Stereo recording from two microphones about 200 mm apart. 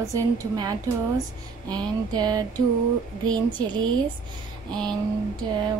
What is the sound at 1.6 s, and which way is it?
Music, 20° right (ahead or behind).